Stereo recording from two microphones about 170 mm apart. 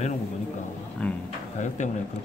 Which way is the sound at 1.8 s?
45° left (ahead or behind).